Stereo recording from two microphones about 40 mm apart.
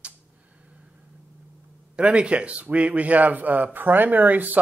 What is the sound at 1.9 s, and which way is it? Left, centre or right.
A man's voice, right.